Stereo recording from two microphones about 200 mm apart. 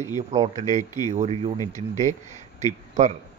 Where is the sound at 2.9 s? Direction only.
35° right (ahead or behind).